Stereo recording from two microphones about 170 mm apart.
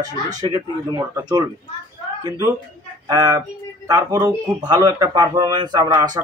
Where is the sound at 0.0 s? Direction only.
20° right (ahead or behind).